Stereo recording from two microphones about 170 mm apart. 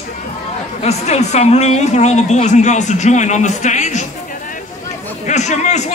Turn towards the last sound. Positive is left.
turn(degrees=45)  # may be behind; listen again after turning